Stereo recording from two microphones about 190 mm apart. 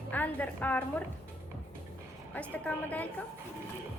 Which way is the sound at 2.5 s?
10° left (ahead or behind).